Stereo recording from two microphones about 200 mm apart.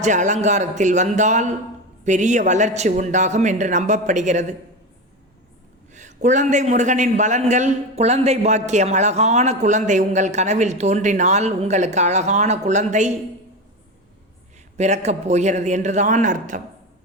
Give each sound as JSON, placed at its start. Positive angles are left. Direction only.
{"t": 0.0, "sound": "a man's voice", "side_deg": -35}
{"t": 5.9, "sound": "a man's voice", "side_deg": -35}
{"t": 14.8, "sound": "a man's voice", "side_deg": -35}